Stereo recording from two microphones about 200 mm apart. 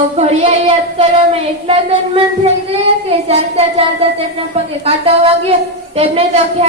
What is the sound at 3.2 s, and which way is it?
Speech, 30° right (ahead or behind).